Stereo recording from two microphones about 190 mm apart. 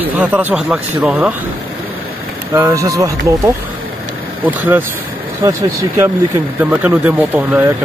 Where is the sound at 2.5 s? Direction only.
15° right (ahead or behind).